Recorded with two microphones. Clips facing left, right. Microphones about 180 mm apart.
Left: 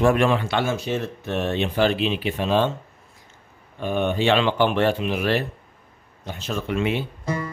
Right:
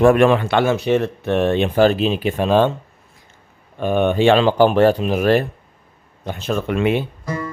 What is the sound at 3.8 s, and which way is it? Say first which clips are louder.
Speech: right 6 dB; 60° right (ahead or behind).